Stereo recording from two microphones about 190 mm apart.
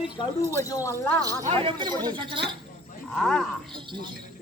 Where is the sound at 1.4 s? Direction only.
30° right (ahead or behind).